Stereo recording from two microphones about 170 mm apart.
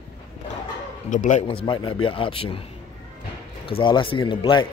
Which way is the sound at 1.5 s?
30° left (ahead or behind).